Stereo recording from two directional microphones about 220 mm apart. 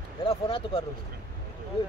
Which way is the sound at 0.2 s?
25° left (ahead or behind).